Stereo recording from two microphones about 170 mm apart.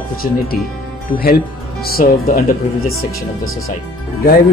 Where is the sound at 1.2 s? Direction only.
65° left (ahead or behind).